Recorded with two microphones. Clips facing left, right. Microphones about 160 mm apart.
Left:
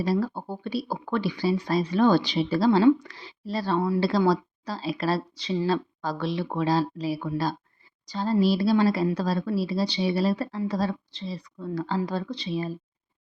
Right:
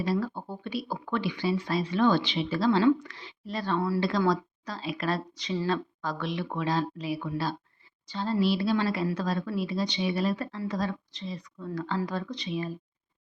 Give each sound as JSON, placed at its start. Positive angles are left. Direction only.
{"t": 0.0, "sound": "speech", "side_deg": 35}